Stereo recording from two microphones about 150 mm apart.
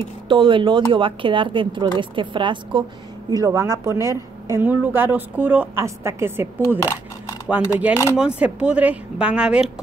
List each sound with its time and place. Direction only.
0.3 s a woman's voice: 35° right (ahead or behind); by 9.7 s 5° right (ahead or behind)